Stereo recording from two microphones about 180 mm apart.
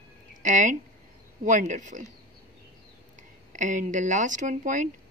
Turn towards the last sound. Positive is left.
turn(degrees=-45)  # may be behind; listen again after turning